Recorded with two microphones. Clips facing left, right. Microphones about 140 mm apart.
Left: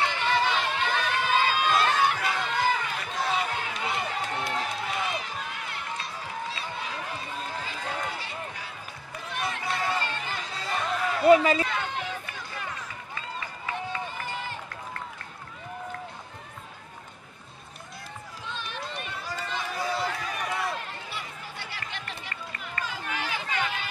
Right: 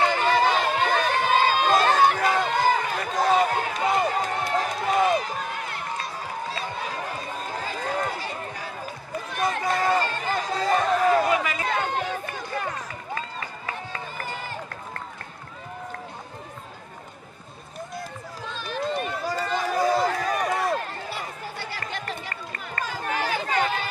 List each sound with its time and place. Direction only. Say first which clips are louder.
0.0 s crowd: right 5 dB; 40° right (ahead or behind)
6.5 s run: right 4 dB; 45° right (ahead or behind)
9.3 s music: right 6 dB; 40° right (ahead or behind)
11.2 s a sound: left 6 dB; 30° left (ahead or behind)
11.6 s run: right 5 dB; 45° right (ahead or behind)
18.4 s run: right 8 dB; 40° right (ahead or behind)